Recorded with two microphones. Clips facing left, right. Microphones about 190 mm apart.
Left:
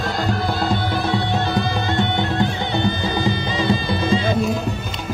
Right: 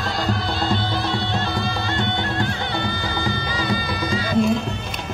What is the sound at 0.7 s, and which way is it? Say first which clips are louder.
Music: left 2 dB; 15° left (ahead or behind).